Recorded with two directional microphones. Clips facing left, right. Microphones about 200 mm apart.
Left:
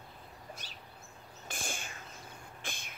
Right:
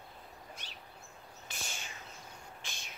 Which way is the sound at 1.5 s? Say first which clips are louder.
Left 5 dB; 50° left (ahead or behind).